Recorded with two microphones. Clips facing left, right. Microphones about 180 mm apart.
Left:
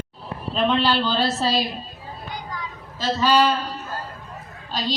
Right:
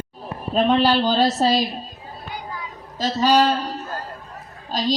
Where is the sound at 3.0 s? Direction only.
40° right (ahead or behind).